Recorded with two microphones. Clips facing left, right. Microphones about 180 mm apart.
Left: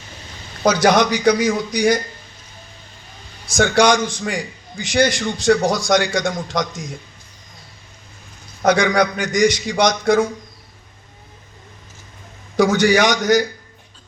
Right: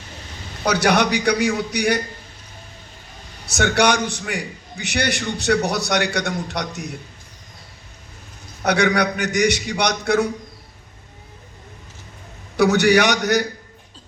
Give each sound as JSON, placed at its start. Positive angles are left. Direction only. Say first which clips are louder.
{"t": 0.7, "sound": "a man's voice", "louder": "left 3 dB", "side_deg": -65}
{"t": 3.4, "sound": "a man's voice", "louder": "left 3 dB", "side_deg": -65}
{"t": 9.0, "sound": "a man's voice", "louder": "left 3 dB", "side_deg": -70}
{"t": 12.5, "sound": "a man's voice", "louder": "even", "side_deg": -65}